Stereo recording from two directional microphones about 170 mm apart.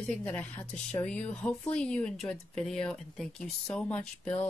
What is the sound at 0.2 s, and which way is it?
Speech, 10° left (ahead or behind).